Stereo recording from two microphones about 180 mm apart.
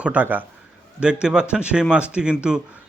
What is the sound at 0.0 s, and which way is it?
Speech, 10° right (ahead or behind).